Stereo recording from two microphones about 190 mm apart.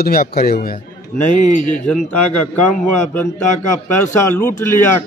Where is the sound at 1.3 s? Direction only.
40° left (ahead or behind).